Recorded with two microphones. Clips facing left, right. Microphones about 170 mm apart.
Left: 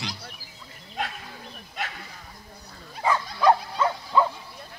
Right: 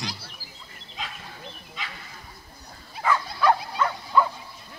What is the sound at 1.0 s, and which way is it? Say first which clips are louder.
Bird: left 6 dB; 60° left (ahead or behind).